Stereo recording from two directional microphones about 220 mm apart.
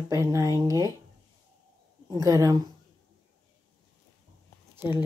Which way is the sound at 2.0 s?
15° right (ahead or behind).